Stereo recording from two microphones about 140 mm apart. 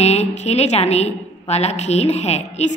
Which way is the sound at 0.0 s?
50° left (ahead or behind).